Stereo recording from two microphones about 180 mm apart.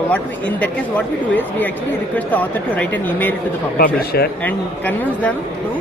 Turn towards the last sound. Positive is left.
turn(degrees=10)  # may be behind; listen again after turning